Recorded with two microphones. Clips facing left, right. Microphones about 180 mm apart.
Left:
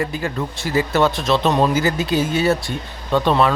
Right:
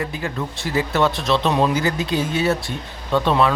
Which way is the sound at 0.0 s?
Centre (ahead or behind).